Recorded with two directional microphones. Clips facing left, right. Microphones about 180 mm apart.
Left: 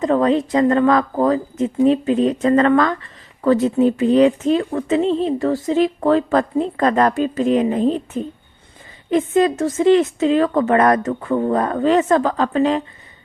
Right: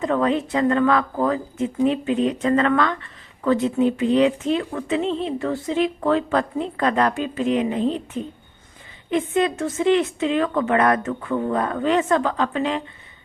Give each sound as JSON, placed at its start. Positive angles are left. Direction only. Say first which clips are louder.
{"t": 0.0, "sound": "speech", "louder": "left 4 dB", "side_deg": 35}